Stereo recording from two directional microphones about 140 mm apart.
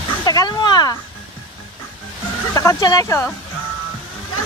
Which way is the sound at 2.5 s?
20° left (ahead or behind).